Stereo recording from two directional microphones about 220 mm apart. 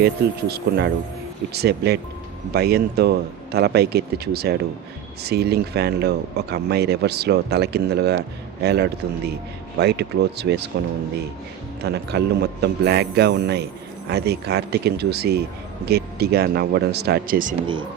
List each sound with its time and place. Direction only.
0.0 s speech: 45° right (ahead or behind)
11.8 s speech: 50° right (ahead or behind)